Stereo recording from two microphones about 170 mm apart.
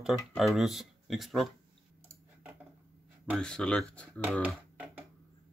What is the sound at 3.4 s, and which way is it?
Speech, 5° left (ahead or behind).